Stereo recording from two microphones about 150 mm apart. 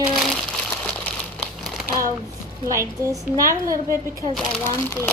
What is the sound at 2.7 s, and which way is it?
Speech, 20° right (ahead or behind).